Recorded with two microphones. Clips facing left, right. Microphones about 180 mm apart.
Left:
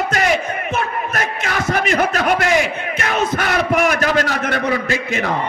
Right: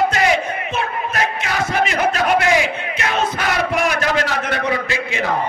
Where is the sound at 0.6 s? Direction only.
50° left (ahead or behind).